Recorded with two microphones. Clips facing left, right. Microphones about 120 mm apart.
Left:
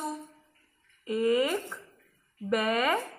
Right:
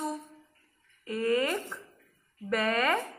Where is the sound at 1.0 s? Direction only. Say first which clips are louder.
Left 2 dB; 15° left (ahead or behind).